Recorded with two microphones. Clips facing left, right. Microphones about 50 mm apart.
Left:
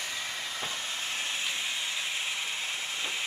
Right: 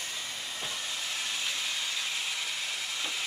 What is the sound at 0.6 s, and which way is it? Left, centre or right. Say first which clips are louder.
Vehicle: right 1 dB; left.